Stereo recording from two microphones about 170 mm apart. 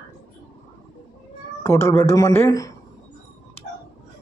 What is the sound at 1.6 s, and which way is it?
A man's voice, 15° left (ahead or behind).